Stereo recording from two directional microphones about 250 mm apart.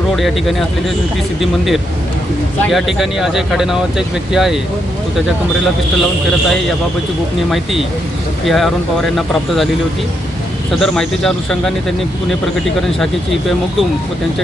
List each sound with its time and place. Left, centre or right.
0.1 s speech: centre
2.7 s speech: centre
8.5 s speech: centre
10.8 s speech: centre